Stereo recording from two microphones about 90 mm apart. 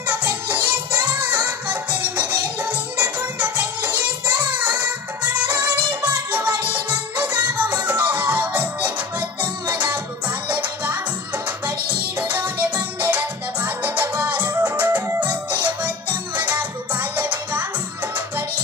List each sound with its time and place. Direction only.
0.1 s music: 20° right (ahead or behind)
12.2 s music: 20° right (ahead or behind)